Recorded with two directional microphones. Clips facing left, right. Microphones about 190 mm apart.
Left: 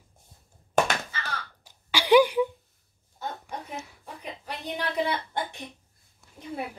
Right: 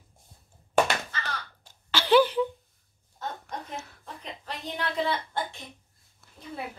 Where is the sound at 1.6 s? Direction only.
10° left (ahead or behind).